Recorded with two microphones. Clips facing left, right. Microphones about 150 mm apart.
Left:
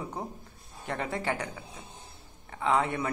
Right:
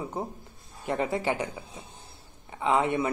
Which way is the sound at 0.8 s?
25° right (ahead or behind).